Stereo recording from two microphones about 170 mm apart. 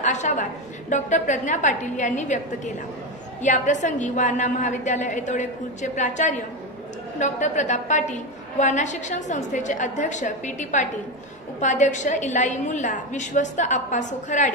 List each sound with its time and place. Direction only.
0.0 s a woman's voice: 45° left (ahead or behind)